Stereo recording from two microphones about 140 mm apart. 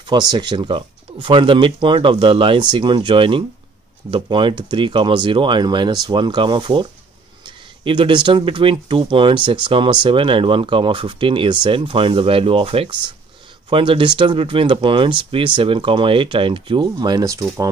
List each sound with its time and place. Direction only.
0.0 s speech: 30° right (ahead or behind)